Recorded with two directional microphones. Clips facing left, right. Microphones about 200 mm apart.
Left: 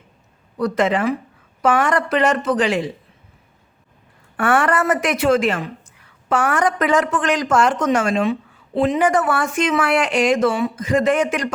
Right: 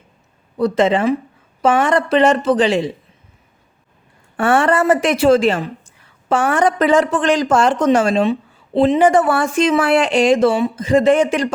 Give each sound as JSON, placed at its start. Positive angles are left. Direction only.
{"t": 0.5, "sound": "a woman's voice", "side_deg": -25}
{"t": 4.4, "sound": "a woman's voice", "side_deg": -25}